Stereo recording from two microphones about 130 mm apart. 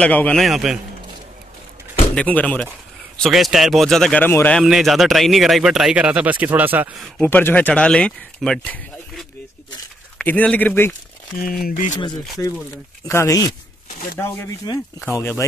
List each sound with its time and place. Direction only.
0.0 s speech: 10° left (ahead or behind)
0.4 s speech: centre (ahead or behind)
2.1 s speech: 10° left (ahead or behind)
3.2 s speech: centre (ahead or behind)
4.2 s speech: 15° left (ahead or behind)
4.6 s speech: centre (ahead or behind)
7.2 s speech: 15° left (ahead or behind)
10.2 s speech: 10° left (ahead or behind)
11.7 s speech: 75° left (ahead or behind)
13.0 s speech: 25° left (ahead or behind)